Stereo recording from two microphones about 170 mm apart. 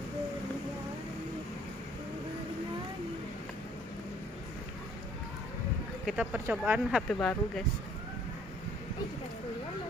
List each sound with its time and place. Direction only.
6.0 s speech: 10° right (ahead or behind)
7.1 s speech: 5° left (ahead or behind)